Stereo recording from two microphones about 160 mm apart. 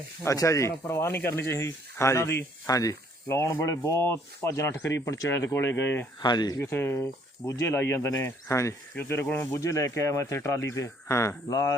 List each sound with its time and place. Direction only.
0.3 s speech: 20° left (ahead or behind)
6.2 s speech: 25° left (ahead or behind)